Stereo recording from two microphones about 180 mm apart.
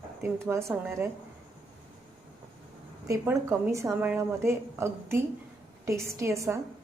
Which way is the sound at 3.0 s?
15° right (ahead or behind).